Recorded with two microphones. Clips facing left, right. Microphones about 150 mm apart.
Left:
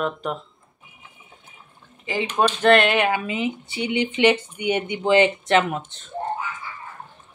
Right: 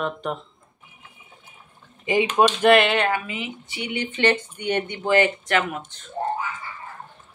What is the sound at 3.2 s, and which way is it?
Speech, 30° left (ahead or behind).